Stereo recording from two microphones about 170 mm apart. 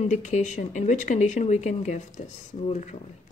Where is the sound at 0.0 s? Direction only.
45° left (ahead or behind).